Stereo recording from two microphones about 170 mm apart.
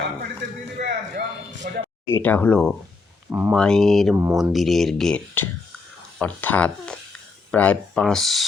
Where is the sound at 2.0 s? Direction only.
10° left (ahead or behind).